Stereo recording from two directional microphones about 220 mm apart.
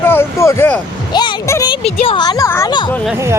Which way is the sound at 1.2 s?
15° left (ahead or behind).